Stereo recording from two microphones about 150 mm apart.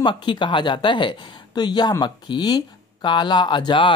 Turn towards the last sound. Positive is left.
turn(degrees=30)  # may be behind; listen again after turning